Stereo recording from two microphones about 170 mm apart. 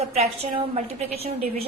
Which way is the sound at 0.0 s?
40° right (ahead or behind).